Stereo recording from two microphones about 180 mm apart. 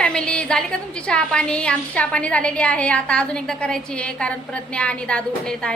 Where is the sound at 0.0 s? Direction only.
5° left (ahead or behind).